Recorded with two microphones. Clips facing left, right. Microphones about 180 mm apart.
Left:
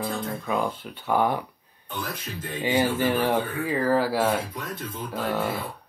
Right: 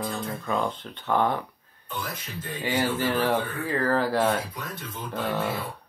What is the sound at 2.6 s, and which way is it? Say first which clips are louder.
Speech: left 3 dB; 15° left (ahead or behind).